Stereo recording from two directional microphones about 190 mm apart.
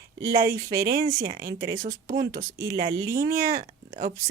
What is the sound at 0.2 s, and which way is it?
Speech, 15° right (ahead or behind).